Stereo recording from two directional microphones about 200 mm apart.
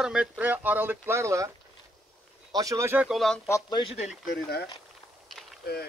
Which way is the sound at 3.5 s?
20° left (ahead or behind).